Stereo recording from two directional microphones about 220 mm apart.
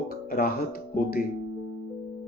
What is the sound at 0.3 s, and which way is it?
Speech, 40° left (ahead or behind).